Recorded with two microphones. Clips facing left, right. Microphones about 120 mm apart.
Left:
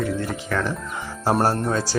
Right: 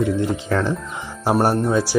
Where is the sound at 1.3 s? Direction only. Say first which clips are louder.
Right 3 dB; 15° right (ahead or behind).